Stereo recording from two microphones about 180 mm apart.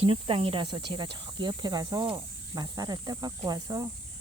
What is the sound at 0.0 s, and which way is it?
Speech, 30° right (ahead or behind).